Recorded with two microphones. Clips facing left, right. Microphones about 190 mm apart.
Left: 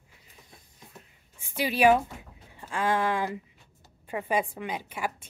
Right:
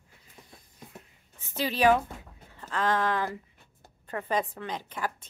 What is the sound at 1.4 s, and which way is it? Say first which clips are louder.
Speech: left 2 dB; 10° left (ahead or behind).